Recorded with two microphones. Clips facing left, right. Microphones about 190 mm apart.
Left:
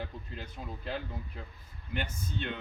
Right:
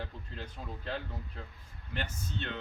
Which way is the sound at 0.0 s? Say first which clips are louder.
Left 1 dB; 10° left (ahead or behind).